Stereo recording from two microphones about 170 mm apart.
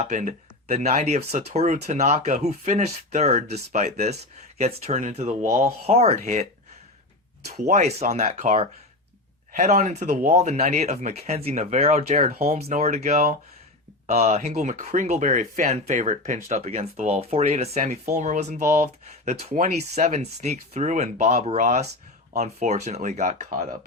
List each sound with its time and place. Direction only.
0.0 s speech: 45° right (ahead or behind)
7.5 s speech: 40° right (ahead or behind)